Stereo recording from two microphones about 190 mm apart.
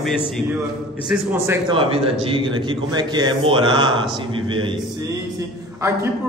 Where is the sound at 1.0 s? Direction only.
10° right (ahead or behind).